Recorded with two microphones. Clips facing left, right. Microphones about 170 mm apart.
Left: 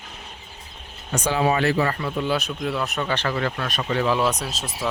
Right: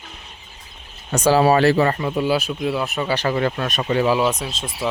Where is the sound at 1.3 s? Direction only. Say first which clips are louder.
Right 6 dB; 35° right (ahead or behind).